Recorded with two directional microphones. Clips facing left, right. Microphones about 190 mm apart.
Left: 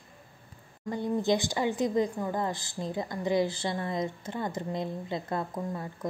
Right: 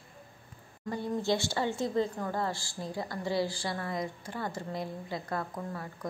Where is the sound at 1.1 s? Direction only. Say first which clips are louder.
Left 3 dB; 15° left (ahead or behind).